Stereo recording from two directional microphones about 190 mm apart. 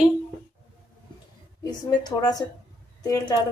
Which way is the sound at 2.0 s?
20° left (ahead or behind).